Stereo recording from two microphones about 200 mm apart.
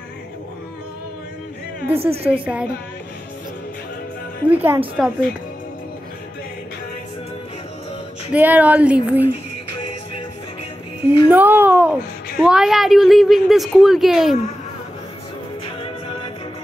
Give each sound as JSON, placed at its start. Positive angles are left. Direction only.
{"t": 2.0, "sound": "a woman's voice", "side_deg": -30}
{"t": 2.4, "sound": "a woman's voice", "side_deg": -5}
{"t": 4.5, "sound": "a woman's voice", "side_deg": -10}
{"t": 8.3, "sound": "speech", "side_deg": -10}
{"t": 11.2, "sound": "a woman's voice", "side_deg": -10}